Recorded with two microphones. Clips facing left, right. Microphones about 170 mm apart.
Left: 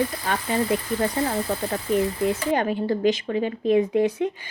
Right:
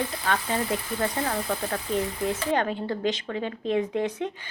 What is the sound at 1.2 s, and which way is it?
Speech, 20° left (ahead or behind).